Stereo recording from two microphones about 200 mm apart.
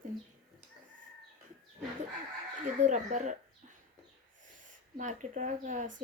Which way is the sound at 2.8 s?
35° right (ahead or behind).